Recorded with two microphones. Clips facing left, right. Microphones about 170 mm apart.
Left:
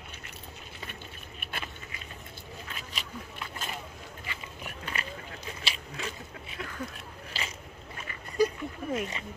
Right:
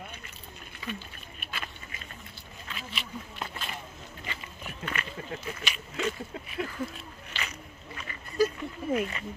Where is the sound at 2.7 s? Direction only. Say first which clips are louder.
Right 5 dB; 40° left (ahead or behind).